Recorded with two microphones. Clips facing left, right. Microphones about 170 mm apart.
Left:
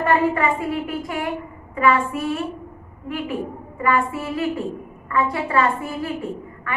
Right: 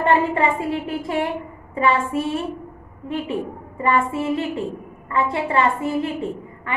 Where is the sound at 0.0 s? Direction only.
25° right (ahead or behind).